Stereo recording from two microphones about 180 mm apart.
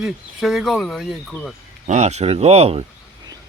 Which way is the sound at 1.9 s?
40° right (ahead or behind).